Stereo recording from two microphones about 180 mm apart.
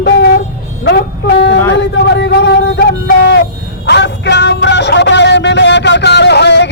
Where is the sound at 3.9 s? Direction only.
70° left (ahead or behind).